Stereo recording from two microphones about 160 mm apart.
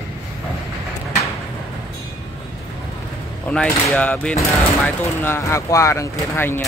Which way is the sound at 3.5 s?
5° left (ahead or behind).